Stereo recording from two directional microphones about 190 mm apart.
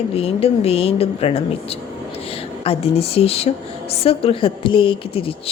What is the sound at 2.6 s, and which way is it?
A woman's voice, 30° left (ahead or behind).